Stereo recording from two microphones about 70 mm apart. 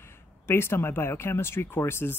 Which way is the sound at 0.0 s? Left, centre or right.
Left.